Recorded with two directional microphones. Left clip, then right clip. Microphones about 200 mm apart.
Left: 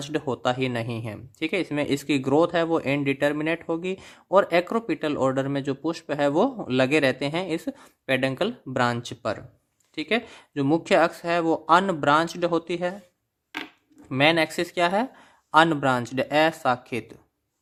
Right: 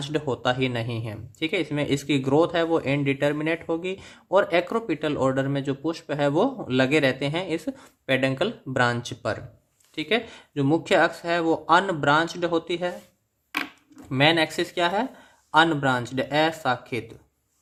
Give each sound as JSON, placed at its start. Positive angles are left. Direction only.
{"t": 0.0, "sound": "speech", "side_deg": 30}
{"t": 14.1, "sound": "speech", "side_deg": 35}